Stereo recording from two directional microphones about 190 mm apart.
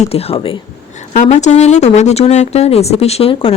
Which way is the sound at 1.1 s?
40° left (ahead or behind).